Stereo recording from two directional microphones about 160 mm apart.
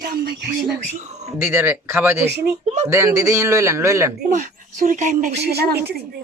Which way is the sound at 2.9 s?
15° right (ahead or behind).